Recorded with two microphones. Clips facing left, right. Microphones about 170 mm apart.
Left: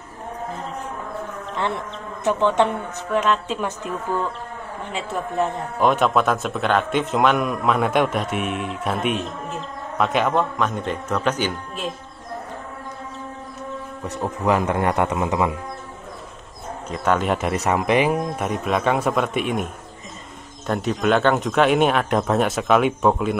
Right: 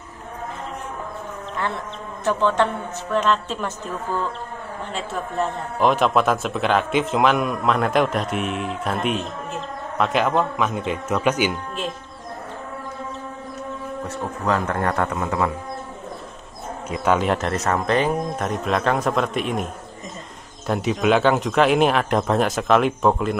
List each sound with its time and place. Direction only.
2.2 s a man's voice: 20° left (ahead or behind)
3.1 s a man's voice: 10° left (ahead or behind)
5.8 s a man's voice: centre (ahead or behind)
14.4 s a man's voice: 15° left (ahead or behind)
16.9 s a man's voice: 5° right (ahead or behind)